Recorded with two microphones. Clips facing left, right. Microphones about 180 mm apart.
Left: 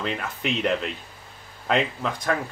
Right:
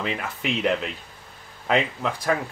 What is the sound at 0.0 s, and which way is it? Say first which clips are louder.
Speech: even; 5° right (ahead or behind).